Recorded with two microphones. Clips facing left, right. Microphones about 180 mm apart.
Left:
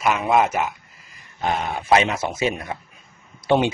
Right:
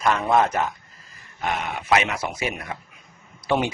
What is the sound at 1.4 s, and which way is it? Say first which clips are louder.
Speech: left 3 dB; 30° left (ahead or behind).